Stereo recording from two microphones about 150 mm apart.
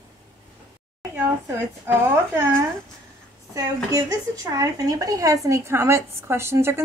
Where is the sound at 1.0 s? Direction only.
20° right (ahead or behind).